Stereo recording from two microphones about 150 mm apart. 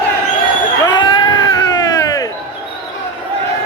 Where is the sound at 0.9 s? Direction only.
30° left (ahead or behind).